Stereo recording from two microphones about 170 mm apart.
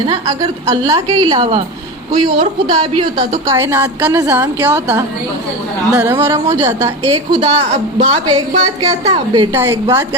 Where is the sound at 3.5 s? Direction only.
15° right (ahead or behind).